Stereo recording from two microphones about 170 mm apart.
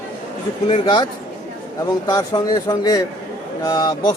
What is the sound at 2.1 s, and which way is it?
Speech, 25° left (ahead or behind).